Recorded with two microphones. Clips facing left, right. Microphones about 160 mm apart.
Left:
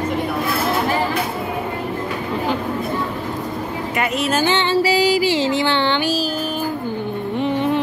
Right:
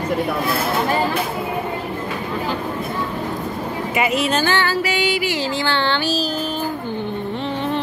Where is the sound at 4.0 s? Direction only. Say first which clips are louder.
Right 1 dB; centre (ahead or behind).